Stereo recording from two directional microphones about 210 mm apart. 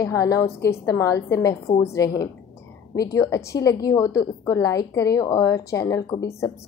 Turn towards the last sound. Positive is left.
turn(degrees=15)  # may be behind; listen again after turning